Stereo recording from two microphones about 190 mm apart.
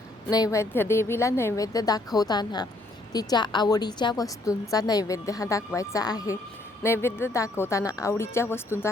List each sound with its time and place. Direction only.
0.3 s a woman's voice: 20° left (ahead or behind)